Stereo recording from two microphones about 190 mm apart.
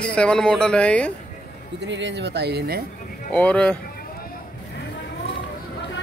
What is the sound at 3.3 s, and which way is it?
Speech, 5° left (ahead or behind).